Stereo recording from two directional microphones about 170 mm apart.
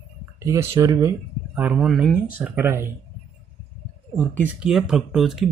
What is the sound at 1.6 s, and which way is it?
Speech, 5° right (ahead or behind).